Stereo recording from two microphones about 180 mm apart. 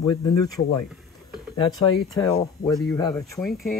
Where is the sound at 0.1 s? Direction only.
20° left (ahead or behind).